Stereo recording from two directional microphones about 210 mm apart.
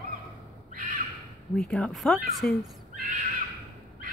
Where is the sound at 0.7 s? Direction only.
40° right (ahead or behind).